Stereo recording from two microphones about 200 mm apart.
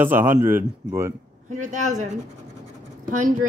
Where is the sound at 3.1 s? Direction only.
40° right (ahead or behind).